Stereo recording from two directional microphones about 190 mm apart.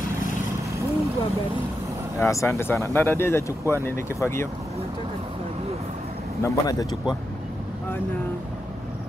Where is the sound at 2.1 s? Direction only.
15° left (ahead or behind).